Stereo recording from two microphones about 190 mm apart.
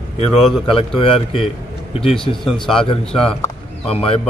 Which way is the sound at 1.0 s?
30° left (ahead or behind).